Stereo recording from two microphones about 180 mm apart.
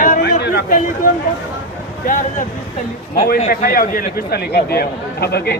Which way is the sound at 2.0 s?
45° left (ahead or behind).